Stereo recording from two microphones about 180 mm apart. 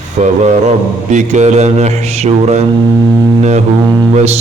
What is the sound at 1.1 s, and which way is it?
Mantra, 40° right (ahead or behind).